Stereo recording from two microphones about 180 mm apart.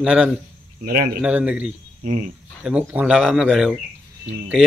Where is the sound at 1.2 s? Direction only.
5° right (ahead or behind).